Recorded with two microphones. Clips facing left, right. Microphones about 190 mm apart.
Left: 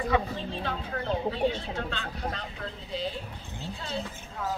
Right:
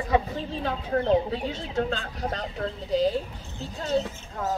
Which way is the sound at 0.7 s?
35° right (ahead or behind).